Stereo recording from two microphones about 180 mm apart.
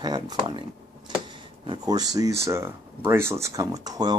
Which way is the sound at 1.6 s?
20° right (ahead or behind).